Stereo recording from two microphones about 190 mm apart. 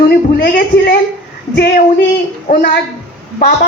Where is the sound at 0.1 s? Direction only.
50° left (ahead or behind).